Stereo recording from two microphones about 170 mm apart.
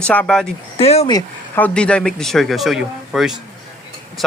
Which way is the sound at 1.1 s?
20° left (ahead or behind).